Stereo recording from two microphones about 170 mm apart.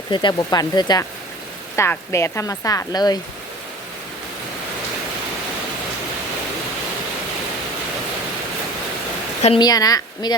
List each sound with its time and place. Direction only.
0.1 s speech: 25° left (ahead or behind)
9.6 s speech: 20° left (ahead or behind)